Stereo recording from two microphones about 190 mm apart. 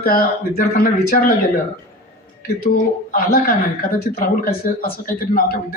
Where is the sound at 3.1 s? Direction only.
50° left (ahead or behind).